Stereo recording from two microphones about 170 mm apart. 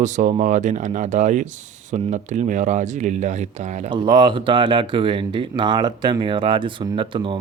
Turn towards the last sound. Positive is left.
turn(degrees=-30)  # may be behind; listen again after turning